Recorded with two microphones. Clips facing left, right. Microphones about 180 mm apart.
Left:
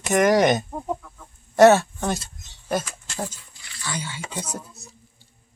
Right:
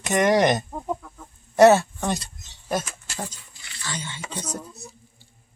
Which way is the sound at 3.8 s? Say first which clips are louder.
Left 2 dB; 10° left (ahead or behind).